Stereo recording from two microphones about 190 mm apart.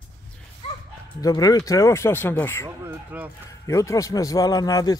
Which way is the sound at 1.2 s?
20° left (ahead or behind).